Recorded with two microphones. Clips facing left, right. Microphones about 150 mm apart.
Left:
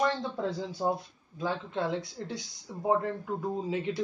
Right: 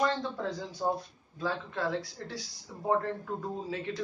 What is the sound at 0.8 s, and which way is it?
Speech, 25° left (ahead or behind).